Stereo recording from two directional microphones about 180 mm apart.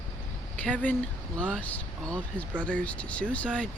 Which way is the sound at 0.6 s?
10° left (ahead or behind).